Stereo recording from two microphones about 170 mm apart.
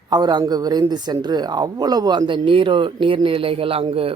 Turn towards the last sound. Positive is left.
turn(degrees=-35)  # may be behind; listen again after turning